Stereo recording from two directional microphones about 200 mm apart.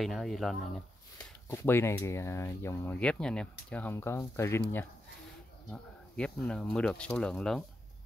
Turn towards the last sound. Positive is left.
turn(degrees=5)  # may be behind; listen again after turning